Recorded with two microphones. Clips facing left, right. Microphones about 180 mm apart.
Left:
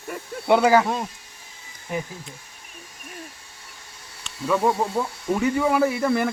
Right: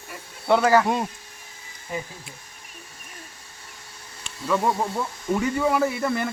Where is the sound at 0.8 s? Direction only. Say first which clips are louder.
Right 2 dB; 10° right (ahead or behind).